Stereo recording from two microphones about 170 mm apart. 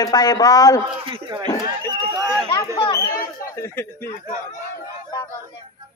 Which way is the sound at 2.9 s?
15° left (ahead or behind).